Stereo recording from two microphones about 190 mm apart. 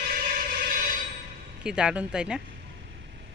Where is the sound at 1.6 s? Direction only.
5° right (ahead or behind).